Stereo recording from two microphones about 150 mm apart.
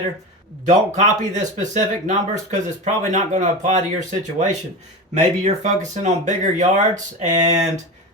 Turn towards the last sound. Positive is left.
turn(degrees=-55)  # may be behind; listen again after turning